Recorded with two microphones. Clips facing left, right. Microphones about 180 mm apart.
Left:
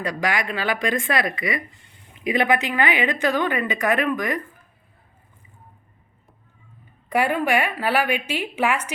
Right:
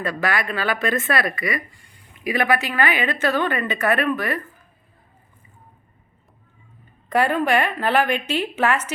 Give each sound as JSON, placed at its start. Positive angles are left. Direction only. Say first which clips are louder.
{"t": 0.0, "sound": "speech", "louder": "right 1 dB", "side_deg": 15}
{"t": 7.1, "sound": "speech", "louder": "right 1 dB", "side_deg": 10}